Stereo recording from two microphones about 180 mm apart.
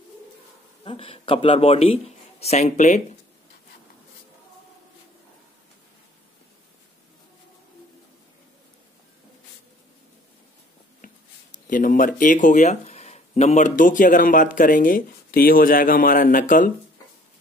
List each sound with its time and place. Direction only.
0.8 s speech: 30° left (ahead or behind)
11.0 s a sound: 45° left (ahead or behind)
11.5 s speech: 45° left (ahead or behind)